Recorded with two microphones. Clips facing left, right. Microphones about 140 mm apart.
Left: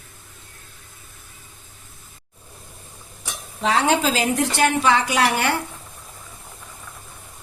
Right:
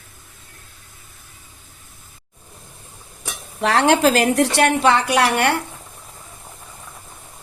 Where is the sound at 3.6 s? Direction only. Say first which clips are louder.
Right 4 dB; 75° right (ahead or behind).